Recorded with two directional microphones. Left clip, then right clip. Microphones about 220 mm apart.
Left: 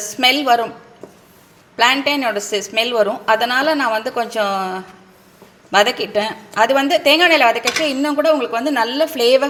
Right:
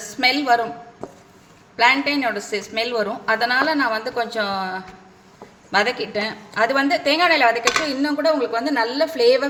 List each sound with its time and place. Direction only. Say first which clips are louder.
0.2 s a woman's voice: left 3 dB; 15° left (ahead or behind)
1.7 s a woman's voice: left 2 dB; 20° left (ahead or behind)